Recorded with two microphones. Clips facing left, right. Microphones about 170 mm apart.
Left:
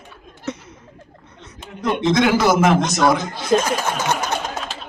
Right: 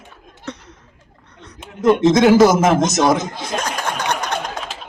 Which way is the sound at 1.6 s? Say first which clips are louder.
Right 7 dB; 45° right (ahead or behind).